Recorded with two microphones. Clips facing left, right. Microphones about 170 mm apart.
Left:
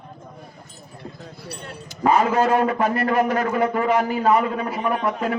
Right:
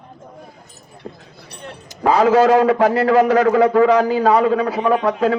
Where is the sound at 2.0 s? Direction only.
90° right.